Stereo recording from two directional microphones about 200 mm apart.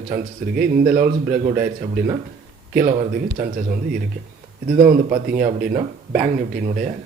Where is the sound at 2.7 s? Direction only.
45° right (ahead or behind).